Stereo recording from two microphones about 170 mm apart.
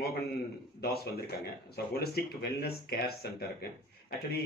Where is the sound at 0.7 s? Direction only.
65° left (ahead or behind).